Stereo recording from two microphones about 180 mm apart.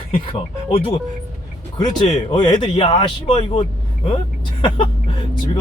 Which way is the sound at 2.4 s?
25° left (ahead or behind).